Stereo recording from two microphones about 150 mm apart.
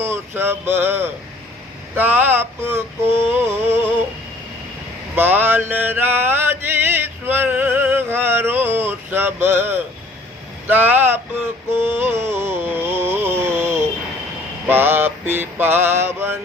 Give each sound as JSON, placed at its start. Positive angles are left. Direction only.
{"t": 0.0, "sound": "mantra", "side_deg": -15}
{"t": 3.3, "sound": "a sound", "side_deg": -15}
{"t": 5.1, "sound": "mantra", "side_deg": -15}
{"t": 11.7, "sound": "music", "side_deg": -15}
{"t": 14.7, "sound": "mantra", "side_deg": -15}